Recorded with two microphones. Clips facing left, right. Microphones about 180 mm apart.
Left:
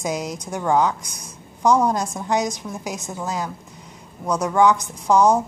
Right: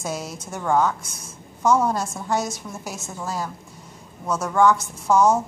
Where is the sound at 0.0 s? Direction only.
15° left (ahead or behind).